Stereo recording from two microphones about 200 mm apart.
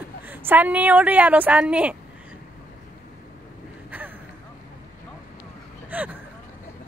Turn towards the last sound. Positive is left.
turn(degrees=-10)  # may be behind; listen again after turning